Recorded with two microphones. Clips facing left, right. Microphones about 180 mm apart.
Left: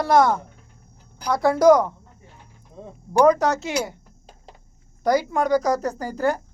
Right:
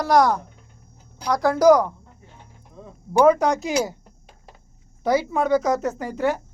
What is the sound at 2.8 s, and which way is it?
Speech, 20° left (ahead or behind).